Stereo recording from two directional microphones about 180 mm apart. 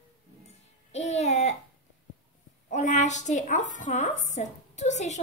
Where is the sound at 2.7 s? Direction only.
40° left (ahead or behind).